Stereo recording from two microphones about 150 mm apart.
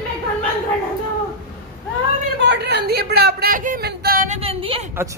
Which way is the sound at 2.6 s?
90° right.